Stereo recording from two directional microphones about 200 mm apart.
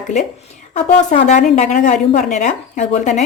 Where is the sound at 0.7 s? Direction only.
35° left (ahead or behind).